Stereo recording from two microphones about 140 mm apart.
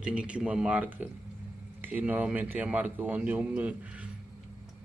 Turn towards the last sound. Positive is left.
turn(degrees=-10)  # may be behind; listen again after turning